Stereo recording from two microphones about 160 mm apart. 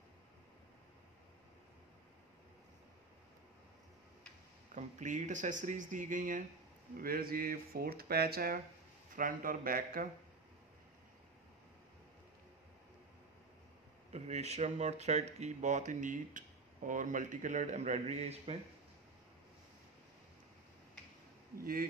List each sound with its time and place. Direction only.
4.7 s speech: 50° right (ahead or behind)
7.0 s speech: 65° right (ahead or behind)
14.1 s speech: 45° right (ahead or behind)
21.5 s speech: 65° right (ahead or behind)